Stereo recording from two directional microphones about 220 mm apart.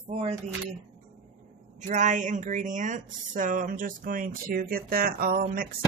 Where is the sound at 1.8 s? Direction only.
35° right (ahead or behind).